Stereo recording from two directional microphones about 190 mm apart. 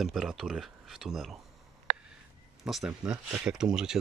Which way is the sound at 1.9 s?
50° right (ahead or behind).